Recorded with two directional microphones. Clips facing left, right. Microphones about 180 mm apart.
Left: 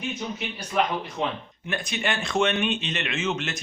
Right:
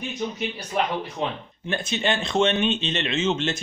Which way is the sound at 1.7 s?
25° right (ahead or behind).